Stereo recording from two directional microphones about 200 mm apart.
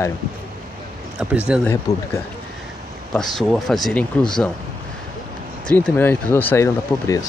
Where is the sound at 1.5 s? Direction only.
5° right (ahead or behind).